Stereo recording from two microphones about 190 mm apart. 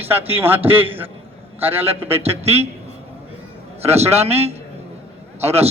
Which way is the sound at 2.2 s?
30° right (ahead or behind).